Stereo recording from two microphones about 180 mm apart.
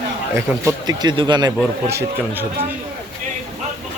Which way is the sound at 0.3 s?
20° right (ahead or behind).